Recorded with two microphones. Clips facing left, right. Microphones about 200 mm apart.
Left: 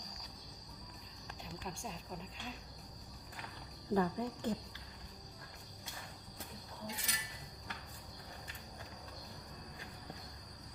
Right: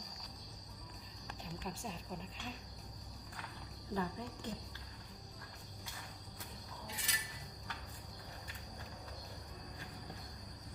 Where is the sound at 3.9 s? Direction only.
50° left (ahead or behind).